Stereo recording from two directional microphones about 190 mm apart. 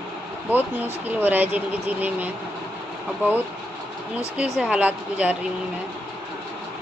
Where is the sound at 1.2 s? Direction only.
10° right (ahead or behind).